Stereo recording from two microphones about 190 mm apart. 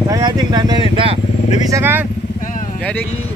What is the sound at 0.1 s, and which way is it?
Speech, 20° right (ahead or behind).